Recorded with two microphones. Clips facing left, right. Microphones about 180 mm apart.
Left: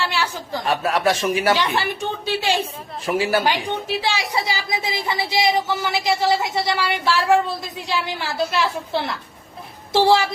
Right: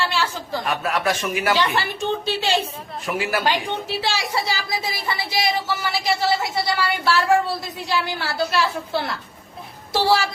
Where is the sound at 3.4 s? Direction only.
15° left (ahead or behind).